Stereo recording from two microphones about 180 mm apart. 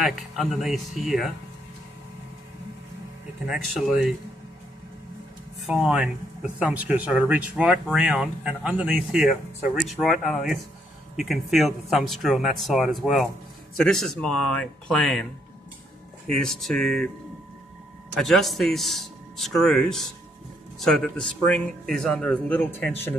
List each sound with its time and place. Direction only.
0.0 s speech: centre (ahead or behind)
3.4 s speech: centre (ahead or behind)
5.7 s speech: 5° right (ahead or behind)
16.3 s speech: 5° left (ahead or behind)
18.2 s speech: centre (ahead or behind)